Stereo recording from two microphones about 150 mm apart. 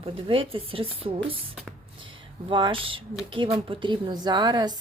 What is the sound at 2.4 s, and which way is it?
Speech, 35° right (ahead or behind).